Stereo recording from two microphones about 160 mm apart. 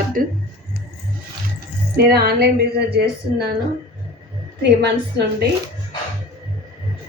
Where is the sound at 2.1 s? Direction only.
85° right.